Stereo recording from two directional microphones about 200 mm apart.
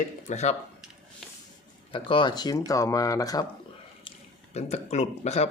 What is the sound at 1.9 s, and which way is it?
Speech, 25° left (ahead or behind).